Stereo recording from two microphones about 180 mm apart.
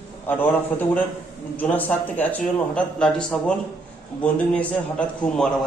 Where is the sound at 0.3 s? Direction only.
10° left (ahead or behind).